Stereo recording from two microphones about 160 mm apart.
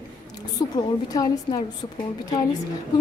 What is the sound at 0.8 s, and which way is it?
Speech, 25° left (ahead or behind).